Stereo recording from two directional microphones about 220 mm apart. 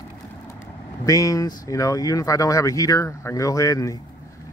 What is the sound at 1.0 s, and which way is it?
Speech, 15° left (ahead or behind).